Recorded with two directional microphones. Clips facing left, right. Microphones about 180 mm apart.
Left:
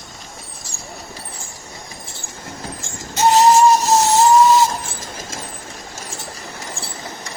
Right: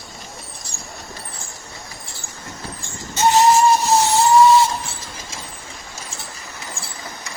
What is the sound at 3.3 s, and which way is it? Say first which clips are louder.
Whistle: left 2 dB; 40° left (ahead or behind).